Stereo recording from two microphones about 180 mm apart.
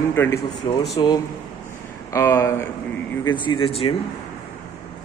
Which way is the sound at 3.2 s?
25° left (ahead or behind).